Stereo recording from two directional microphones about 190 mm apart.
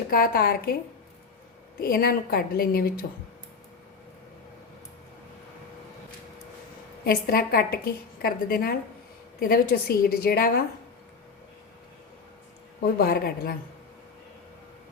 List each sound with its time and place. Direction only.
0.1 s a woman's voice: 50° left (ahead or behind)
1.8 s a woman's voice: 55° left (ahead or behind)
7.0 s a woman's voice: 50° left (ahead or behind)
12.8 s a woman's voice: 55° left (ahead or behind)